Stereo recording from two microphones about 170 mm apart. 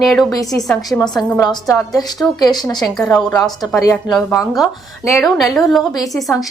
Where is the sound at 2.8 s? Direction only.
5° left (ahead or behind).